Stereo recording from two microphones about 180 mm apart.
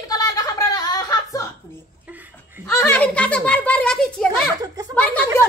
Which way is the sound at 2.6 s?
10° left (ahead or behind).